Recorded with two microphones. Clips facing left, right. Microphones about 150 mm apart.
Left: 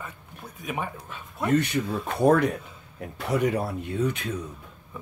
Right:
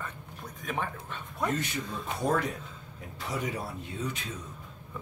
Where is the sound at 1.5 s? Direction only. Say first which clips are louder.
Left 10 dB; 65° left (ahead or behind).